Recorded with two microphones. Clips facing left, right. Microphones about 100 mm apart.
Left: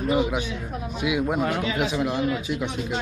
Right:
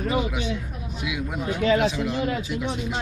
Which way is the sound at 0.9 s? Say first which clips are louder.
Left 6 dB; 55° left (ahead or behind).